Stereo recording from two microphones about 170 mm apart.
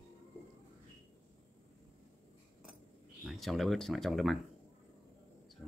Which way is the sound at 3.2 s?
Centre (ahead or behind).